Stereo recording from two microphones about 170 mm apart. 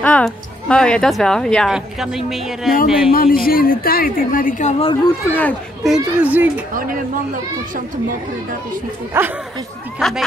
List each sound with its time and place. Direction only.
0.0 s a woman's voice: 5° left (ahead or behind)
3.1 s a woman's voice: 60° left (ahead or behind); by 4.9 s 40° left (ahead or behind)
5.0 s speech: 15° left (ahead or behind)
5.9 s speech: 10° right (ahead or behind)
9.1 s speech: 15° right (ahead or behind)
9.9 s speech: centre (ahead or behind)